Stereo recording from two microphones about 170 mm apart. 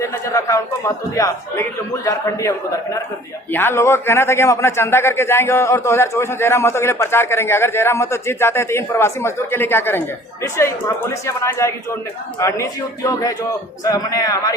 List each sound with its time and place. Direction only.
0.0 s a man's voice: 15° left (ahead or behind)